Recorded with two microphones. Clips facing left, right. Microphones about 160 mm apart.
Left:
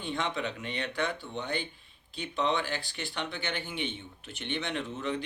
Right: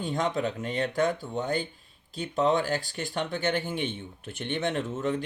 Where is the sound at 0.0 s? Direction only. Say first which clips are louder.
Right 5 dB; 40° right (ahead or behind).